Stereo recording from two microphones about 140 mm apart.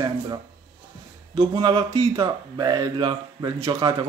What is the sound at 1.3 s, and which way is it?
Speech, 35° right (ahead or behind).